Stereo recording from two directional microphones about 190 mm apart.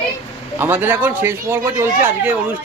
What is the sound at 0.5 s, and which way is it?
A man's voice, 10° right (ahead or behind).